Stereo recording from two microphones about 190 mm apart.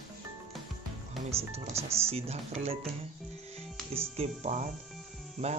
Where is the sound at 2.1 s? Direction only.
30° right (ahead or behind).